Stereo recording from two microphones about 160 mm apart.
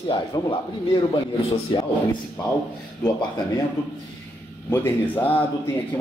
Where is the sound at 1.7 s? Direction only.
30° left (ahead or behind).